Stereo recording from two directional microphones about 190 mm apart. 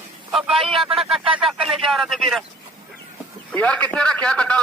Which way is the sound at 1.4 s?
Centre (ahead or behind).